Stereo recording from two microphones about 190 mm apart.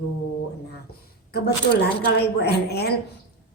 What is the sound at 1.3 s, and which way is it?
Speech, 55° left (ahead or behind).